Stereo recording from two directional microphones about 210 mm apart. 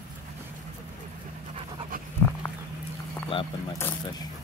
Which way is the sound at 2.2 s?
10° left (ahead or behind).